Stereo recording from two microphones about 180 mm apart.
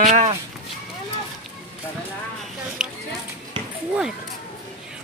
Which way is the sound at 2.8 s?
5° right (ahead or behind).